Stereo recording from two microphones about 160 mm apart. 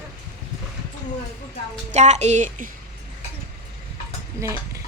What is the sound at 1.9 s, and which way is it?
Speech, 45° right (ahead or behind).